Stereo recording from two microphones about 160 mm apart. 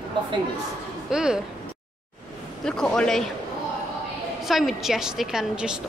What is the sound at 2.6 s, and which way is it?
Speech, 5° left (ahead or behind).